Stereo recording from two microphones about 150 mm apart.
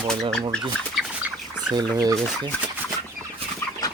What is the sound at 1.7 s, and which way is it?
Speech, 25° right (ahead or behind).